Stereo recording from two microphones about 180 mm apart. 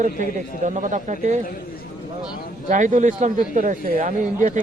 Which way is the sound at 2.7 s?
45° right (ahead or behind).